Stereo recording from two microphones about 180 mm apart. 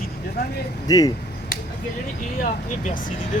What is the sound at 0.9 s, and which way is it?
Speech, 20° left (ahead or behind).